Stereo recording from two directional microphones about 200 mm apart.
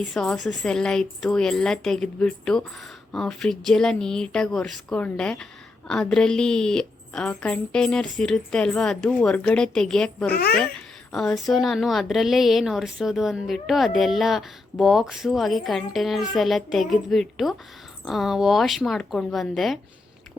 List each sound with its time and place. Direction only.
0.1 s a woman's voice: centre (ahead or behind)
10.3 s speech: 50° left (ahead or behind)
11.1 s a woman's voice: centre (ahead or behind)